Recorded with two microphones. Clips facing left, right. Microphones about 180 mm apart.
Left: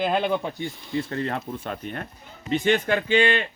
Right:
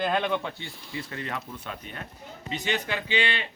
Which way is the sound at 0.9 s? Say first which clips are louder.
Left 7 dB; 45° left (ahead or behind).